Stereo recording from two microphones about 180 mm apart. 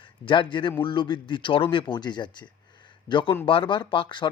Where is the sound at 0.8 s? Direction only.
25° left (ahead or behind).